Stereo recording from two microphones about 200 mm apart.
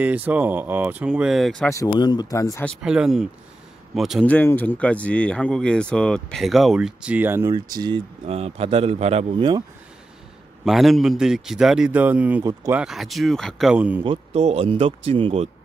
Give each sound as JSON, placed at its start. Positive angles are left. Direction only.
{"t": 0.0, "sound": "speech", "side_deg": -10}
{"t": 1.7, "sound": "speech", "side_deg": 20}
{"t": 2.8, "sound": "speech", "side_deg": -5}
{"t": 7.5, "sound": "a man's voice", "side_deg": -20}
{"t": 10.6, "sound": "speech", "side_deg": 0}
{"t": 14.0, "sound": "a man's voice", "side_deg": -30}